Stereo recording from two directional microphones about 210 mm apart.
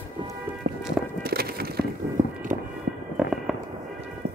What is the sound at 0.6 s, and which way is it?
Music, 45° right (ahead or behind).